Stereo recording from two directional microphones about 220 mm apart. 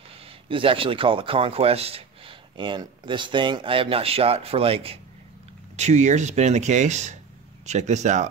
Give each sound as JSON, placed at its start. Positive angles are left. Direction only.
{"t": 0.5, "sound": "speech", "side_deg": -25}